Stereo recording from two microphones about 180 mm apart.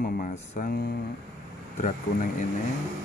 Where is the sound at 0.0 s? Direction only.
55° left (ahead or behind).